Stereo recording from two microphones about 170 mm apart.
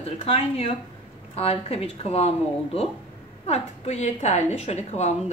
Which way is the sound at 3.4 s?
40° left (ahead or behind).